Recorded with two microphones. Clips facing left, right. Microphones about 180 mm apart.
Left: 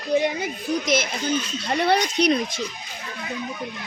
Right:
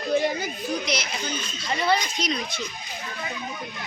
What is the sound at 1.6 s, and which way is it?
Speech, 65° left (ahead or behind).